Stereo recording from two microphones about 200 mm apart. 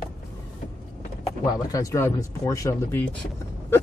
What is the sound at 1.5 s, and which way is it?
Speech, 15° left (ahead or behind).